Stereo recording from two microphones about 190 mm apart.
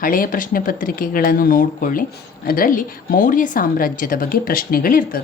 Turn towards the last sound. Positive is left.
turn(degrees=50)  # may be behind; listen again after turning